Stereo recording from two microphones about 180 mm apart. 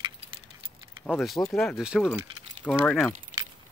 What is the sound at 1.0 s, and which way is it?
Speech, centre (ahead or behind).